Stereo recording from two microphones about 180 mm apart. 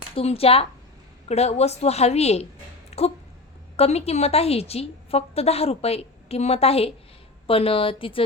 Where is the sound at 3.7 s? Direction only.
35° left (ahead or behind).